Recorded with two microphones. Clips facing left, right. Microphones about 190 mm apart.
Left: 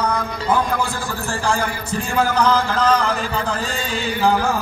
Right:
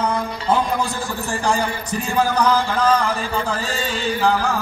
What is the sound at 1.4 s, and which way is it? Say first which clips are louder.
A man's voice: right 1 dB; 20° right (ahead or behind).